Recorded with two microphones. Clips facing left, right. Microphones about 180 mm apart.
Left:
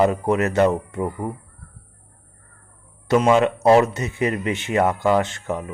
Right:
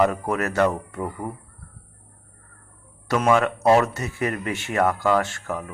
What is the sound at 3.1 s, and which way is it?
Speech, 20° left (ahead or behind).